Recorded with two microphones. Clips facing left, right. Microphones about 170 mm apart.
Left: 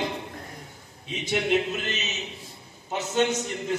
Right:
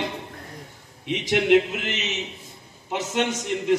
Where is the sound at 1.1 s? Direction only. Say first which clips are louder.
Right 6 dB; 90° right.